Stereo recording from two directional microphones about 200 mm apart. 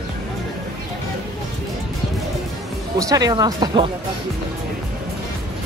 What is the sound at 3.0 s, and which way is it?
Speech, 20° right (ahead or behind).